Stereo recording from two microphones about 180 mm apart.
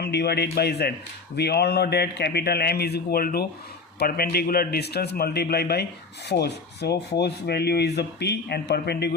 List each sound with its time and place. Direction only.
0.0 s a man's voice: 65° left (ahead or behind)